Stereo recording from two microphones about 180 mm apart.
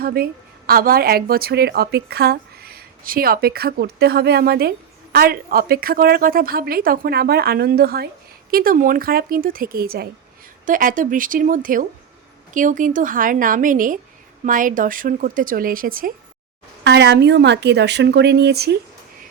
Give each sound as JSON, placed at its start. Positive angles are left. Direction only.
{"t": 0.0, "sound": "a woman's voice", "side_deg": -55}
{"t": 16.8, "sound": "a woman's voice", "side_deg": -70}